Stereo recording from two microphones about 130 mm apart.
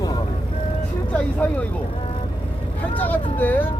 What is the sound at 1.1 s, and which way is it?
Speech, 10° left (ahead or behind).